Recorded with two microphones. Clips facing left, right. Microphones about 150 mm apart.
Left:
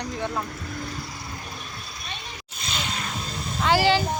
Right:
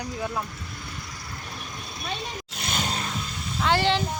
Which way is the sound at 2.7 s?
40° right (ahead or behind).